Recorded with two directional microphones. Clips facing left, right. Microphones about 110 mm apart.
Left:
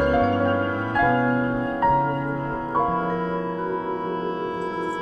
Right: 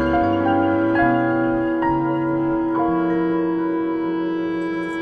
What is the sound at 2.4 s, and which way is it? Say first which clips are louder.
Music: right 5 dB; 30° left (ahead or behind).